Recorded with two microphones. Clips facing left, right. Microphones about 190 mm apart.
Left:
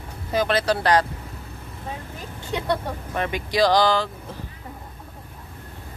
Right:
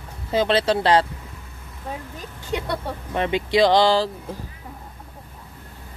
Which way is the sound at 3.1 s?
25° right (ahead or behind).